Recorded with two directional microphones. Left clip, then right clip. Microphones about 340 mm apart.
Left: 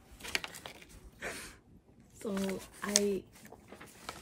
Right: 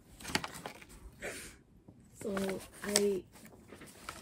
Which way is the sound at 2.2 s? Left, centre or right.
Centre.